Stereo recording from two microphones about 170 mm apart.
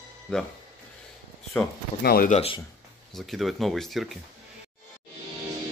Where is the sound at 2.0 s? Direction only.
60° left (ahead or behind).